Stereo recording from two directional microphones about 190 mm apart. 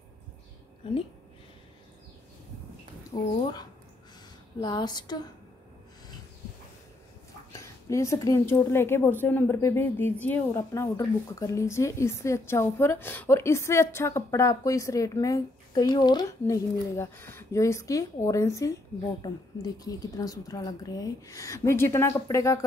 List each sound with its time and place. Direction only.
0.8 s speech: 25° left (ahead or behind)
3.1 s speech: 30° left (ahead or behind)
4.6 s speech: 20° left (ahead or behind)
7.5 s a woman's voice: 15° left (ahead or behind)